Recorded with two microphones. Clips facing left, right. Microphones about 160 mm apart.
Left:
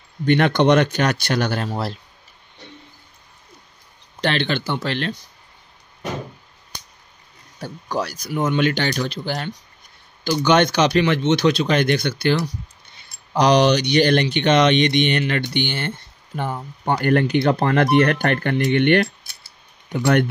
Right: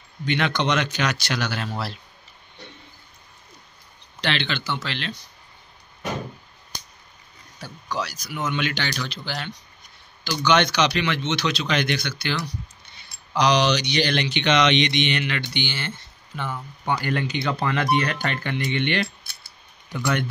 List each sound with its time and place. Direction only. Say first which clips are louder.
0.2 s speech: left 8 dB; 55° left (ahead or behind)
4.2 s speech: left 5 dB; 50° left (ahead or behind)
7.5 s speech: left 5 dB; 50° left (ahead or behind)
16.3 s speech: left 5 dB; 40° left (ahead or behind)
16.8 s speech: left 7 dB; 55° left (ahead or behind)